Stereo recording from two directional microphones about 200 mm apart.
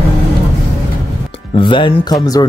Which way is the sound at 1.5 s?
25° left (ahead or behind).